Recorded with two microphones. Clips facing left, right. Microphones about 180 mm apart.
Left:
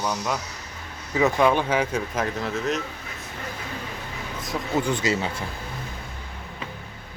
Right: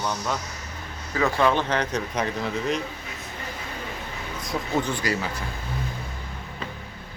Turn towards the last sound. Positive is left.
turn(degrees=25)  # may be behind; listen again after turning